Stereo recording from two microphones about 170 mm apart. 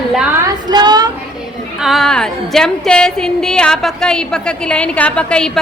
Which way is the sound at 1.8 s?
Centre (ahead or behind).